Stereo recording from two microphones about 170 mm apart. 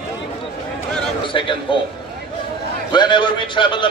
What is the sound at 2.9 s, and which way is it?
Speech, 25° left (ahead or behind).